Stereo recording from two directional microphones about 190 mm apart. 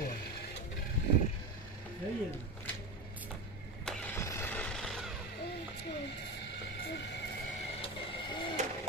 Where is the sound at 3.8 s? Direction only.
15° left (ahead or behind).